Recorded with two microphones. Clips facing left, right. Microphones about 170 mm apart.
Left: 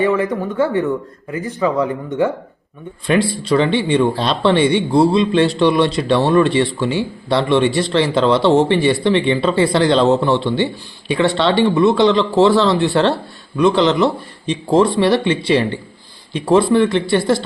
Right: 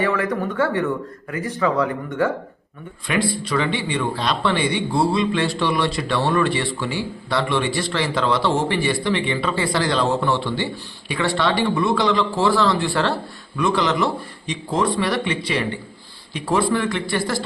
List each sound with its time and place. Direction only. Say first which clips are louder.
0.0 s a man's voice: left 5 dB; 20° left (ahead or behind)
3.4 s a man's voice: left 7 dB; 30° left (ahead or behind)